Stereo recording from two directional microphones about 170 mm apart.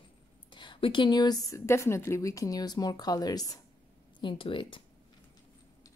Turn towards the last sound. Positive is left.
turn(degrees=30)  # may be behind; listen again after turning